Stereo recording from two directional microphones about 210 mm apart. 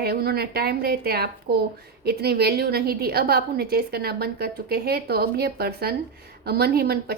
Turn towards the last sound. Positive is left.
turn(degrees=-45)  # may be behind; listen again after turning